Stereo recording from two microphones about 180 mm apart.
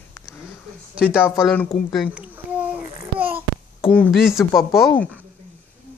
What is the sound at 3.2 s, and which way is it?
Babbling, 10° right (ahead or behind).